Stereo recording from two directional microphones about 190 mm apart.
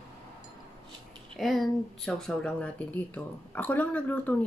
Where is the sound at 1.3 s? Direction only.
Centre (ahead or behind).